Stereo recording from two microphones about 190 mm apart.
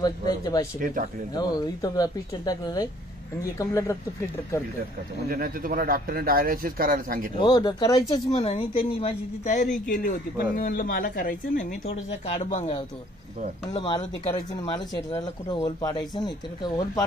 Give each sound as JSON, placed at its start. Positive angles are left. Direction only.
{"t": 0.7, "sound": "speech", "side_deg": -45}
{"t": 1.3, "sound": "speech", "side_deg": 20}
{"t": 5.3, "sound": "speech", "side_deg": -50}
{"t": 7.3, "sound": "speech", "side_deg": 20}
{"t": 8.1, "sound": "a woman's voice", "side_deg": 30}
{"t": 13.7, "sound": "speech", "side_deg": 25}